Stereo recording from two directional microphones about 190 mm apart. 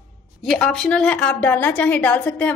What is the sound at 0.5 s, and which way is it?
A woman's voice, 5° left (ahead or behind).